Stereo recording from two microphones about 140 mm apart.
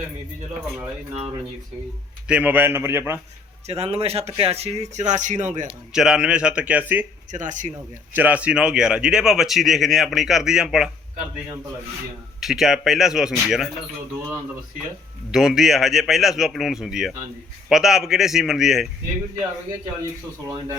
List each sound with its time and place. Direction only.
2.2 s speech: 10° right (ahead or behind)
3.7 s a man's voice: 45° right (ahead or behind)
5.9 s speech: 5° right (ahead or behind)
7.3 s speech: 60° right (ahead or behind)
8.1 s speech: 10° right (ahead or behind)
12.4 s speech: centre (ahead or behind)
15.3 s speech: 5° right (ahead or behind)